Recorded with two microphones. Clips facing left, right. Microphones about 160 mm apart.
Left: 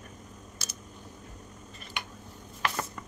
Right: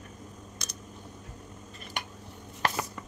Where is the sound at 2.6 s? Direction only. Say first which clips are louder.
Right 2 dB; 35° right (ahead or behind).